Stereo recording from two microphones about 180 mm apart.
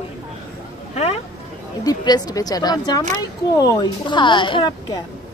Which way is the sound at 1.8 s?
20° left (ahead or behind).